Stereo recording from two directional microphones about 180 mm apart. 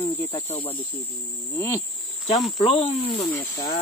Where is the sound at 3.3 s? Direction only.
15° left (ahead or behind).